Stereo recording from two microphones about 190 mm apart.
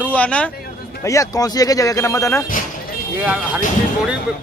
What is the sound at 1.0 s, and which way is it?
Speech, 20° left (ahead or behind).